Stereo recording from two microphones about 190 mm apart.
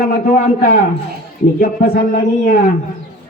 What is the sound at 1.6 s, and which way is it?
Speech, 50° left (ahead or behind).